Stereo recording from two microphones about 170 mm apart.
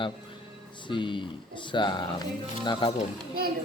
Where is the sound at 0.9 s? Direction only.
30° left (ahead or behind).